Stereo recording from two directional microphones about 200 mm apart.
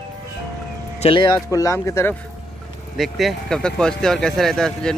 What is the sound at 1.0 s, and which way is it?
Speech, 25° left (ahead or behind).